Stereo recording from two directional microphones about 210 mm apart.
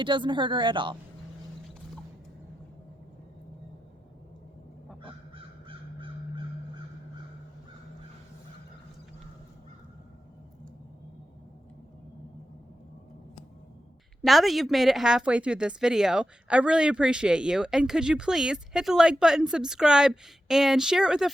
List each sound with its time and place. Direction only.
0.0 s a woman's voice: 20° right (ahead or behind)
5.6 s crow: 25° right (ahead or behind)
14.2 s a woman's voice: centre (ahead or behind)